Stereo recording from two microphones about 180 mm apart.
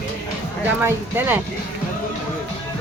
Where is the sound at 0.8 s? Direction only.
10° right (ahead or behind).